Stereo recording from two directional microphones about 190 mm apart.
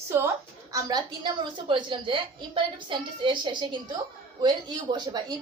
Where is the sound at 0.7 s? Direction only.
20° right (ahead or behind).